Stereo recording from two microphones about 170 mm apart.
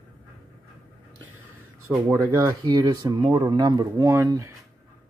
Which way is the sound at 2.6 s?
25° right (ahead or behind).